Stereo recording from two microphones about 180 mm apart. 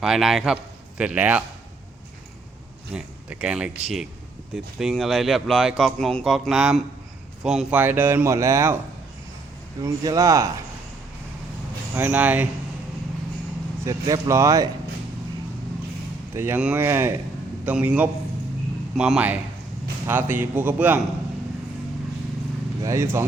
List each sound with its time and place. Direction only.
0.0 s a man's voice: centre (ahead or behind)
2.9 s speech: 5° right (ahead or behind)
9.8 s speech: 20° right (ahead or behind)
11.9 s speech: 10° right (ahead or behind)
13.8 s speech: 15° right (ahead or behind)
16.3 s speech: 15° right (ahead or behind)
22.8 s speech: 15° right (ahead or behind)